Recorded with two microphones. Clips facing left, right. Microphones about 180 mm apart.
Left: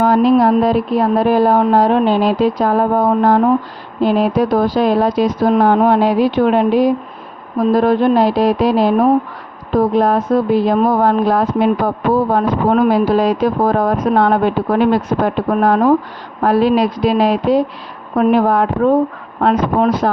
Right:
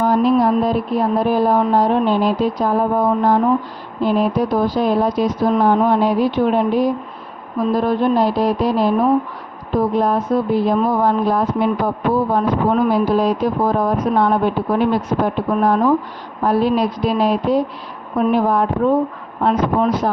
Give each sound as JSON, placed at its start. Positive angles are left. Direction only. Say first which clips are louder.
{"t": 0.0, "sound": "speech", "louder": "left 3 dB", "side_deg": 80}
{"t": 4.0, "sound": "speech", "louder": "left 3 dB", "side_deg": 90}
{"t": 7.7, "sound": "speech", "louder": "left 4 dB", "side_deg": 75}
{"t": 12.3, "sound": "speech", "louder": "left 2 dB", "side_deg": 75}
{"t": 16.4, "sound": "speech", "louder": "left 3 dB", "side_deg": 85}
{"t": 18.2, "sound": "speech", "louder": "left 3 dB", "side_deg": 75}